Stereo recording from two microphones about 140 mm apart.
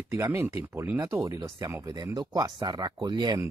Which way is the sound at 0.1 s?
20° right (ahead or behind).